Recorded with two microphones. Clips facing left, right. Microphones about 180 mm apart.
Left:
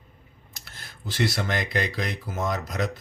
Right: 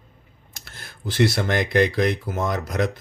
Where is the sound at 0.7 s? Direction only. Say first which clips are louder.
Right 5 dB; 55° right (ahead or behind).